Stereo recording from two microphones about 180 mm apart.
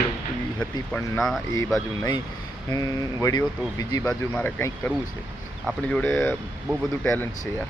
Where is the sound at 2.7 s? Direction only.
20° left (ahead or behind).